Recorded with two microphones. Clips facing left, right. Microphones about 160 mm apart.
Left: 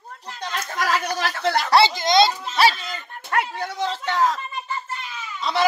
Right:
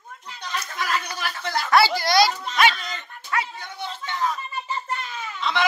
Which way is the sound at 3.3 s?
60° left (ahead or behind).